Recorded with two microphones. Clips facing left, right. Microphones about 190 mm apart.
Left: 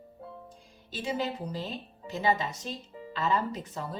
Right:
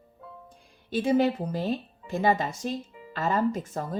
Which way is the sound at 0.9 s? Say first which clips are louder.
Right 9 dB; 55° right (ahead or behind).